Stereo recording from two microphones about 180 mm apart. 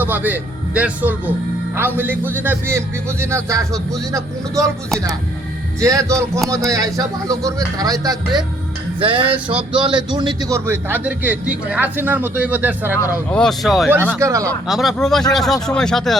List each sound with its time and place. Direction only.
0.0 s a man's voice: 10° right (ahead or behind)
5.8 s a man's voice: 15° right (ahead or behind)
10.7 s a man's voice: 10° right (ahead or behind)
12.9 s speech: 10° left (ahead or behind)
14.2 s a man's voice: 15° right (ahead or behind)
14.7 s speech: centre (ahead or behind)